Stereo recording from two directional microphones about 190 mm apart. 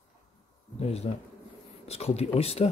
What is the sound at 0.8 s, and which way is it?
Speech, 35° left (ahead or behind).